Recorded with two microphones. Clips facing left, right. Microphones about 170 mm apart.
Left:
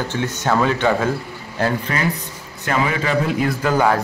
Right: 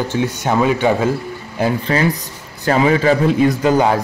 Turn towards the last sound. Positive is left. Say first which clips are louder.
# right 3 dB
turn(degrees=-20)  # may be behind; listen again after turning